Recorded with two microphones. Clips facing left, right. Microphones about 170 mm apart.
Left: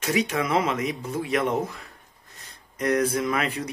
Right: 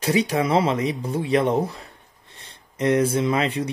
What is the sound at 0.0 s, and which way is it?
Speech, 30° right (ahead or behind).